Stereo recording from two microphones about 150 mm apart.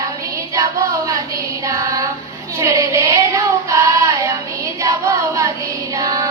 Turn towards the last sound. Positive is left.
turn(degrees=-25)  # may be behind; listen again after turning